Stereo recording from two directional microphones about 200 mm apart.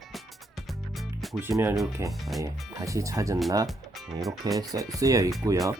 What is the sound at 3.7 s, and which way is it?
Speech, centre (ahead or behind).